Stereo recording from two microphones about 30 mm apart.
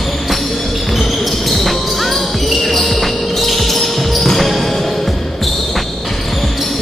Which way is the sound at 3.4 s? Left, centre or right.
Centre.